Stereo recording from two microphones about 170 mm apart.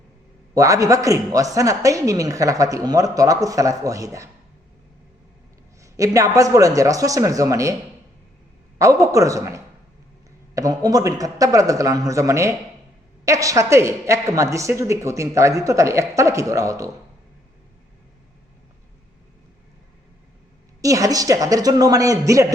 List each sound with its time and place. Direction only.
0.5 s a woman's voice: 20° right (ahead or behind)
5.8 s a woman's voice: 20° right (ahead or behind)
8.8 s a woman's voice: 20° right (ahead or behind)
20.8 s a woman's voice: 20° right (ahead or behind)